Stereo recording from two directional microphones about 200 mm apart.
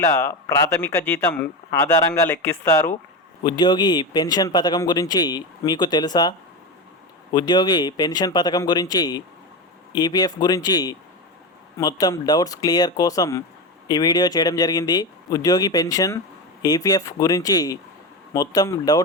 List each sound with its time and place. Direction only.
0.0 s speech: 15° left (ahead or behind)
7.3 s speech: 20° left (ahead or behind)